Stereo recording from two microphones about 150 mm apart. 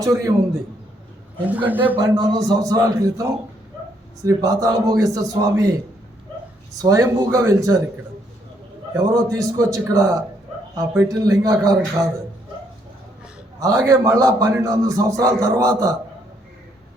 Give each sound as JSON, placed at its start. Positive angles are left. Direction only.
{"t": 0.0, "sound": "a man's voice", "side_deg": -25}
{"t": 1.5, "sound": "a man's voice", "side_deg": -10}
{"t": 2.0, "sound": "a man's voice", "side_deg": -25}
{"t": 6.8, "sound": "a man's voice", "side_deg": -20}
{"t": 8.9, "sound": "a man's voice", "side_deg": -25}
{"t": 13.6, "sound": "a man's voice", "side_deg": -20}